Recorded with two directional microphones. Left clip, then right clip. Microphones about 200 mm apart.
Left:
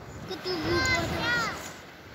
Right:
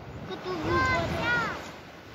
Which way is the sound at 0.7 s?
60° left (ahead or behind).